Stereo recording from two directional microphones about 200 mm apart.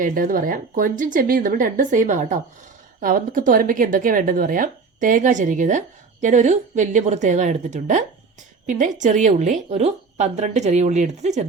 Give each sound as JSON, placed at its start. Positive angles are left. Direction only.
{"t": 0.0, "sound": "speech", "side_deg": -45}